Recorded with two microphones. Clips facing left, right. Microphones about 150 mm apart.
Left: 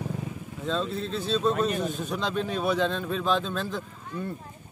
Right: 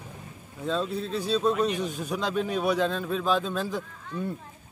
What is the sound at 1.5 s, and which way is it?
Speech, 45° left (ahead or behind).